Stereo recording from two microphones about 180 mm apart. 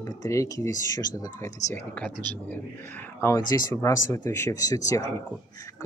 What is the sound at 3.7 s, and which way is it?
Speech, 15° left (ahead or behind).